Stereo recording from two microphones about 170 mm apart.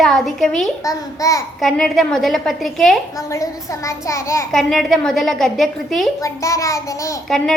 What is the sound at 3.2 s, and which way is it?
A child's voice, 20° left (ahead or behind).